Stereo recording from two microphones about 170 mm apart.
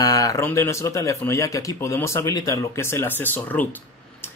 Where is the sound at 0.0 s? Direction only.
20° left (ahead or behind).